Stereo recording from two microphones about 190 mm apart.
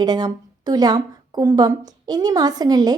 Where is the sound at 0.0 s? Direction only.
20° right (ahead or behind).